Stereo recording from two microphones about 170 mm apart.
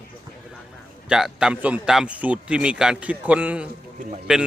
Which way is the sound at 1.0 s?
5° right (ahead or behind).